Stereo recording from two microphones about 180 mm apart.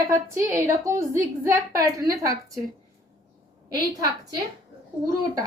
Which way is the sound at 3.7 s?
20° right (ahead or behind).